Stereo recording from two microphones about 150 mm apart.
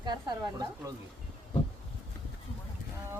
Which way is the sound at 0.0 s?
30° right (ahead or behind).